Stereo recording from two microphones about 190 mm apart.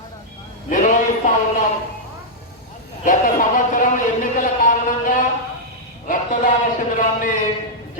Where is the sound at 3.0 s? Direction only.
45° left (ahead or behind).